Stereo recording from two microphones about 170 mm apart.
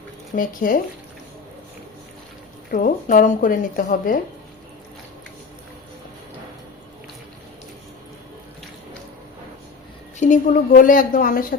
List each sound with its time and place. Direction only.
0.3 s speech: 55° left (ahead or behind)
2.7 s a woman's voice: 55° left (ahead or behind)
10.2 s a woman's voice: 50° left (ahead or behind)